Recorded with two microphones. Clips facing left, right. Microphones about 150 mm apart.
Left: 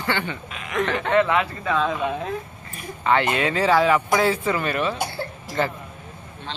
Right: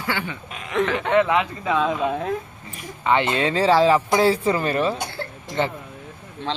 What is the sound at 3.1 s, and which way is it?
Speech, 20° right (ahead or behind).